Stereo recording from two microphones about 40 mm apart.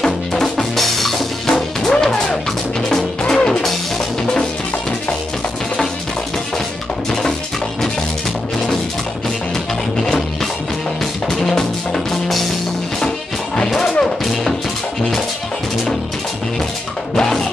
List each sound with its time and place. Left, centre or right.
0.0 s music: centre
1.5 s music: centre
11.2 s music: centre
13.7 s music: centre
17.1 s music: centre